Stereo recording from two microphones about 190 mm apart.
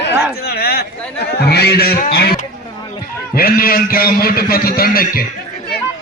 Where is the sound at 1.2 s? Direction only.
55° left (ahead or behind).